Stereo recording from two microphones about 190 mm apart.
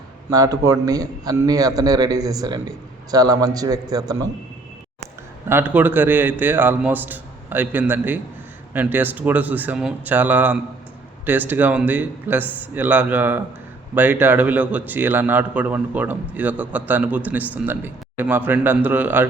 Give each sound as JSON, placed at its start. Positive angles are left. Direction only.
{"t": 0.3, "sound": "a man's voice", "side_deg": -20}
{"t": 5.5, "sound": "a man's voice", "side_deg": -10}